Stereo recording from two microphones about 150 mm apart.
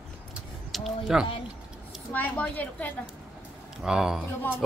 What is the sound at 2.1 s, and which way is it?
Speech, 10° left (ahead or behind).